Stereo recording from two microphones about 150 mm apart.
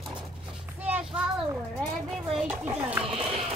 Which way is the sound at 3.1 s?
40° right (ahead or behind).